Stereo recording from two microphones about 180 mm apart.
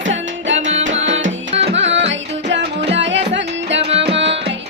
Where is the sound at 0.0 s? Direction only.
90° right.